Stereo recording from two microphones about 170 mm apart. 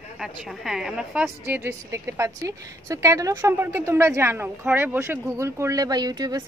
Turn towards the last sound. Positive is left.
turn(degrees=-25)  # may be behind; listen again after turning